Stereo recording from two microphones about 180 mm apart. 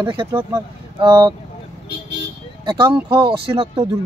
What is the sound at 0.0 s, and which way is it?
Speech, 25° right (ahead or behind).